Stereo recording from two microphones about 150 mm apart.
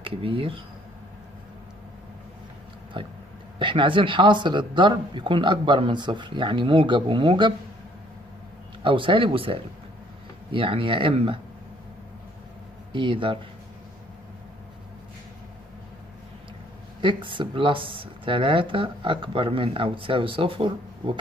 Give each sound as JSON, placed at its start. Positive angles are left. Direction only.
{"t": 0.0, "sound": "speech", "side_deg": -35}
{"t": 2.9, "sound": "speech", "side_deg": -35}
{"t": 8.8, "sound": "speech", "side_deg": -35}
{"t": 12.9, "sound": "speech", "side_deg": -35}
{"t": 17.0, "sound": "speech", "side_deg": -35}